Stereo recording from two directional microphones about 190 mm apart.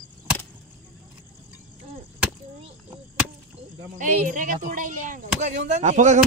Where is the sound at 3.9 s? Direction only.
45° right (ahead or behind).